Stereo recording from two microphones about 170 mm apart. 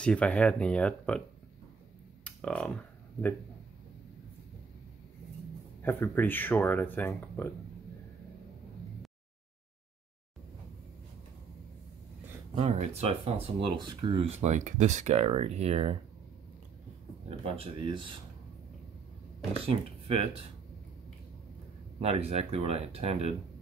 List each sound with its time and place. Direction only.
0.0 s speech: 5° left (ahead or behind)
2.2 s a sound: 5° left (ahead or behind)
5.8 s speech: 10° left (ahead or behind)
12.5 s speech: 40° right (ahead or behind)
13.2 s speech: 25° right (ahead or behind)
17.3 s speech: 35° right (ahead or behind)
19.6 s speech: 35° right (ahead or behind)
22.0 s speech: 35° right (ahead or behind)